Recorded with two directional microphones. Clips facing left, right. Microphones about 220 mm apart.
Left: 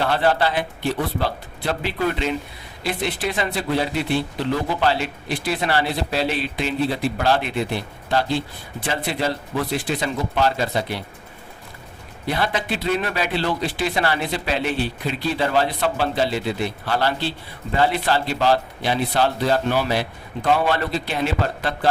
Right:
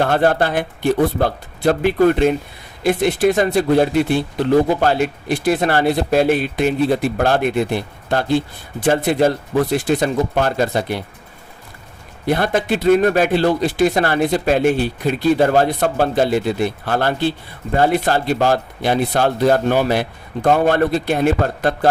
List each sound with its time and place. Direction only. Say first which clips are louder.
0.0 s speech: right 4 dB; 50° right (ahead or behind)
12.3 s speech: right 6 dB; 50° right (ahead or behind)